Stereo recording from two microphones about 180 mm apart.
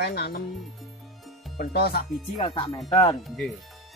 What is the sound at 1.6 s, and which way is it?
Speech, 60° left (ahead or behind).